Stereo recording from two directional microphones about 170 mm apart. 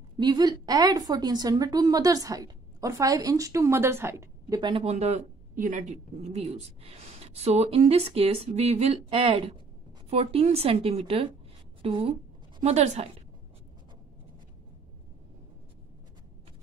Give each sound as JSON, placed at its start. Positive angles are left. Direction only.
{"t": 0.2, "sound": "a woman's voice", "side_deg": -25}
{"t": 4.6, "sound": "a woman's voice", "side_deg": -25}
{"t": 4.8, "sound": "speech", "side_deg": -40}